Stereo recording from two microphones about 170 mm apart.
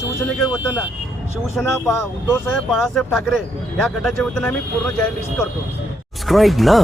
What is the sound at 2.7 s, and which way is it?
Speech, centre (ahead or behind).